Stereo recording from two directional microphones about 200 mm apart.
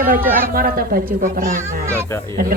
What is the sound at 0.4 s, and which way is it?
A woman's voice, 45° right (ahead or behind).